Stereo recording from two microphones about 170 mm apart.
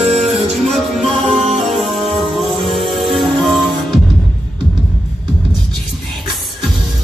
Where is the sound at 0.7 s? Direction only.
Centre (ahead or behind).